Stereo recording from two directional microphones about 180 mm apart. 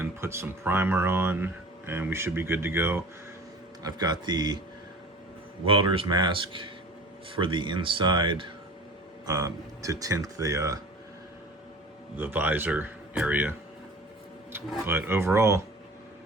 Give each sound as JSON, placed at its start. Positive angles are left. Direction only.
{"t": 0.0, "sound": "speech", "side_deg": -15}
{"t": 3.8, "sound": "speech", "side_deg": -20}
{"t": 5.6, "sound": "speech", "side_deg": -30}
{"t": 12.1, "sound": "speech", "side_deg": -10}
{"t": 14.8, "sound": "speech", "side_deg": -10}